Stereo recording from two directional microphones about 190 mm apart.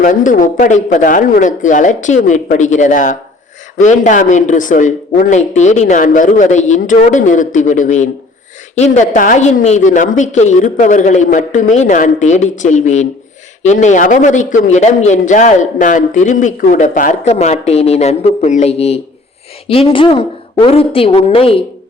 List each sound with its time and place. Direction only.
0.0 s a man's voice: 45° left (ahead or behind)